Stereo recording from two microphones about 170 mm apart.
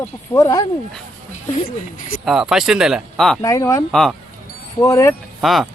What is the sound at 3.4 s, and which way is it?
Speech, 20° left (ahead or behind).